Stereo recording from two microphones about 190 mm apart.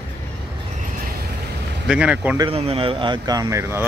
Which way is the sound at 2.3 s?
30° right (ahead or behind).